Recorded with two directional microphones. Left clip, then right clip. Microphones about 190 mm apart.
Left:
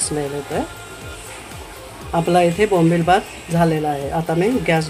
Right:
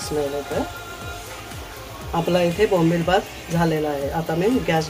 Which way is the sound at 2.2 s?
30° left (ahead or behind).